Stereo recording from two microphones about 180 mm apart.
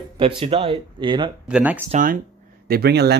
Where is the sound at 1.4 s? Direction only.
5° right (ahead or behind).